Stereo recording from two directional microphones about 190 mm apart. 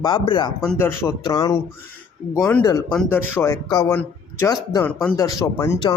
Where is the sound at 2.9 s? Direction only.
10° left (ahead or behind).